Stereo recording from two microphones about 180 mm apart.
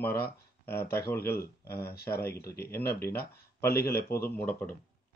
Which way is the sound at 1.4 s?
60° left (ahead or behind).